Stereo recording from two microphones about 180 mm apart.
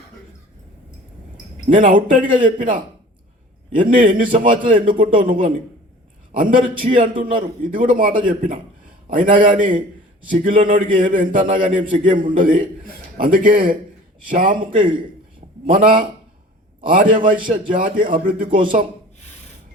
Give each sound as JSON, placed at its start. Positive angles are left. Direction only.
{"t": 1.7, "sound": "a man's voice", "side_deg": -50}
{"t": 2.0, "sound": "a man's voice", "side_deg": -25}
{"t": 2.6, "sound": "a man's voice", "side_deg": -50}
{"t": 6.8, "sound": "a man's voice", "side_deg": -40}